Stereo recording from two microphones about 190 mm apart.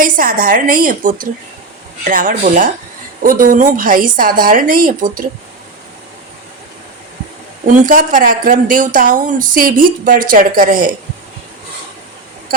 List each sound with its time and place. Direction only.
0.0 s speech: 45° right (ahead or behind)
7.9 s speech: 45° right (ahead or behind)